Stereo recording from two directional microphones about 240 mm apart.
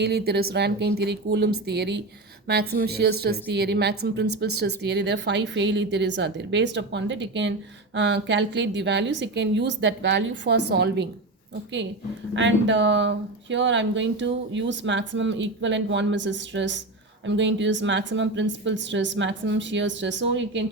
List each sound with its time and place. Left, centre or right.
0.0 s speech: right
12.3 s speech: right